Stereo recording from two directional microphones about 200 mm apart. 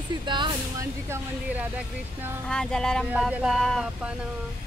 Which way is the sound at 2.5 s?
5° left (ahead or behind).